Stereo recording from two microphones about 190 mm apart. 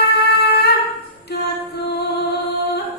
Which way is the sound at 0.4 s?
60° left (ahead or behind).